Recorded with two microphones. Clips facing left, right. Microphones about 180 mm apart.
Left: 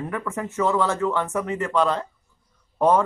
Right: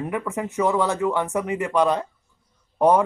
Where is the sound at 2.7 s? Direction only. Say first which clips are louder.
Right 1 dB; 15° right (ahead or behind).